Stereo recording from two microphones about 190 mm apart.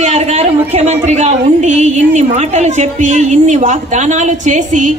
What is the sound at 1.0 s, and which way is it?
A woman's voice, 35° right (ahead or behind).